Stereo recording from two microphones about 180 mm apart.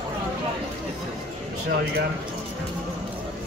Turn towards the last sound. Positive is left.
turn(degrees=-55)  # may be behind; listen again after turning